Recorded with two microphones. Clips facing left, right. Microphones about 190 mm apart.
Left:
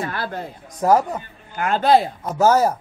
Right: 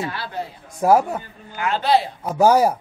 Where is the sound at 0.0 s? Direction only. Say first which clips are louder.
Left 1 dB; 50° left (ahead or behind).